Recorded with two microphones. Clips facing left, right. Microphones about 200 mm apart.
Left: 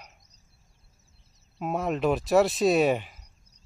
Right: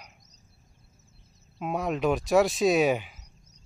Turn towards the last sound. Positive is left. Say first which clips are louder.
# left 1 dB
turn(degrees=0)  # may be behind; listen again after turning